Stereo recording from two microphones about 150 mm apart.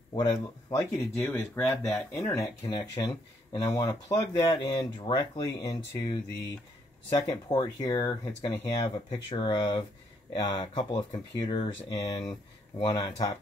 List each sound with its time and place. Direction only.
0.1 s speech: 25° left (ahead or behind)
1.1 s speech: 15° left (ahead or behind)
10.3 s speech: 30° left (ahead or behind)